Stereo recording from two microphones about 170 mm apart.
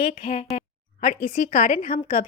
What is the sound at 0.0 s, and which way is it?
A woman's voice, 50° left (ahead or behind).